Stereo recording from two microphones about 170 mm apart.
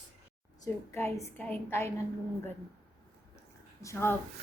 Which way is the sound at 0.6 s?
15° left (ahead or behind).